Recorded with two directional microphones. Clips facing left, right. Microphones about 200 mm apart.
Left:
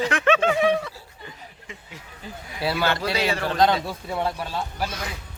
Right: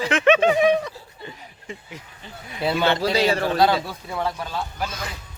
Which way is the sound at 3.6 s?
5° right (ahead or behind).